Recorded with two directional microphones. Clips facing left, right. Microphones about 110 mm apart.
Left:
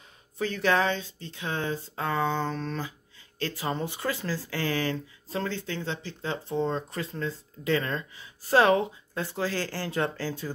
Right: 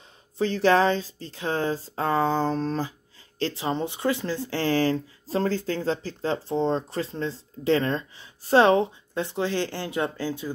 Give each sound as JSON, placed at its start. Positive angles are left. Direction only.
{"t": 0.4, "sound": "speech", "side_deg": -30}